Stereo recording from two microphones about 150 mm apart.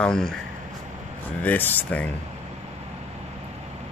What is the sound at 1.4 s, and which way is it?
Speech, 10° left (ahead or behind).